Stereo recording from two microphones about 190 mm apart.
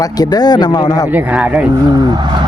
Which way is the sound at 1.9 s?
20° right (ahead or behind).